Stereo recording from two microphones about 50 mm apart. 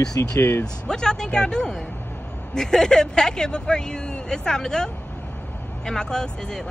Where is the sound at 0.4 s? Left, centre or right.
Left.